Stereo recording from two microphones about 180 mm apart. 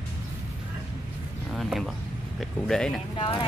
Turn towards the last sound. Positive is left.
turn(degrees=30)  # may be behind; listen again after turning